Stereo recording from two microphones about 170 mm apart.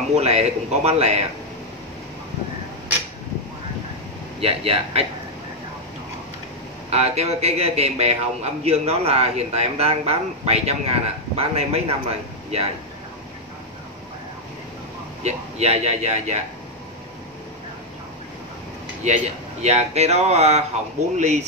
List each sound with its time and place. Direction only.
0.1 s a man's voice: 40° right (ahead or behind)
4.4 s a man's voice: 35° right (ahead or behind)
6.9 s a man's voice: 40° right (ahead or behind)
15.2 s a man's voice: 40° right (ahead or behind)
19.0 s a man's voice: 40° right (ahead or behind)